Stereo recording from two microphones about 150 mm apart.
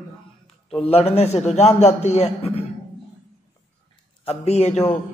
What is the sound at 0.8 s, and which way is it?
A man's voice, 40° left (ahead or behind).